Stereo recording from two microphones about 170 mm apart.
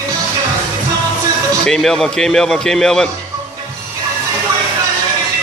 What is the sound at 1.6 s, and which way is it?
A man's voice, 5° left (ahead or behind).